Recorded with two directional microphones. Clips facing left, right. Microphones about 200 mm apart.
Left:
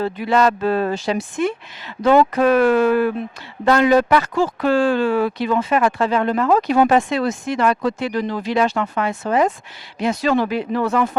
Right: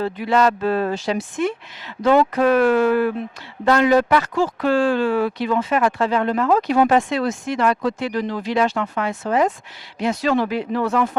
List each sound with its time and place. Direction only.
0.0 s speech: 15° left (ahead or behind)